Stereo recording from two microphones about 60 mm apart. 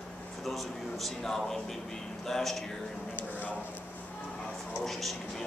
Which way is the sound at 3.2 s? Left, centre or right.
Left.